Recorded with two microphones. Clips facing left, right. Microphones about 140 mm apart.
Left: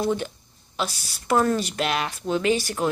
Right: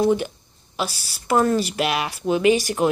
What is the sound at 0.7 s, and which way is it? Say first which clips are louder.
A woman's voice: right 2 dB; 5° right (ahead or behind).